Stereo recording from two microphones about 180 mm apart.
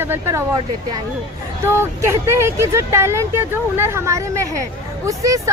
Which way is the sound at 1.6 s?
15° right (ahead or behind).